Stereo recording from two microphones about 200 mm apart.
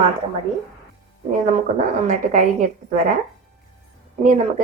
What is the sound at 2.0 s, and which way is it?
Speech, 40° right (ahead or behind).